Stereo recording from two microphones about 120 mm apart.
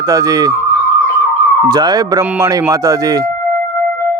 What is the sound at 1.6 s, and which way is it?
A man's voice, 35° right (ahead or behind).